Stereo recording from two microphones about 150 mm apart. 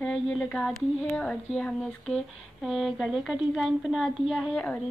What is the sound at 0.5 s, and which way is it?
A woman's voice, centre (ahead or behind).